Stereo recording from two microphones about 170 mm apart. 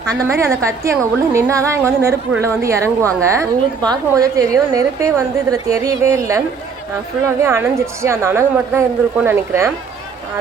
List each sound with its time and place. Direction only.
0.2 s a woman's voice: 15° right (ahead or behind)
7.4 s a woman's voice: 15° right (ahead or behind)